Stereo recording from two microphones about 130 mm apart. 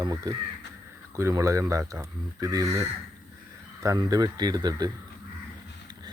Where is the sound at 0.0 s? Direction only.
30° right (ahead or behind).